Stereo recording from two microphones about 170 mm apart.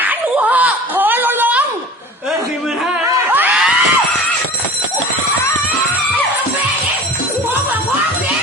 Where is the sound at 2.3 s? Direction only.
Centre (ahead or behind).